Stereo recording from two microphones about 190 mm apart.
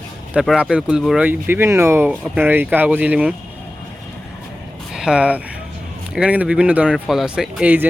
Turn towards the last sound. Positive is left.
turn(degrees=-5)  # may be behind; listen again after turning